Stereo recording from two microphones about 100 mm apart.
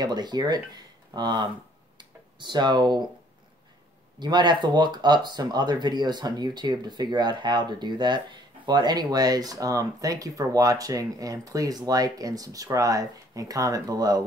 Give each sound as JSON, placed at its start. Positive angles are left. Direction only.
{"t": 0.0, "sound": "speech", "side_deg": -45}
{"t": 2.0, "sound": "tick-tock", "side_deg": -50}
{"t": 4.2, "sound": "speech", "side_deg": -45}